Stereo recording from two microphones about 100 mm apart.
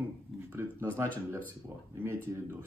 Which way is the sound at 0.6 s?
25° right (ahead or behind).